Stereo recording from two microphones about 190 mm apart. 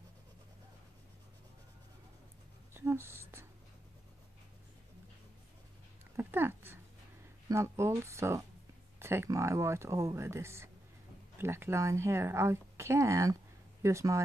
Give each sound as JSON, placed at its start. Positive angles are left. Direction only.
{"t": 2.7, "sound": "speech", "side_deg": -10}
{"t": 6.1, "sound": "a sound", "side_deg": -10}
{"t": 7.4, "sound": "a woman's voice", "side_deg": -15}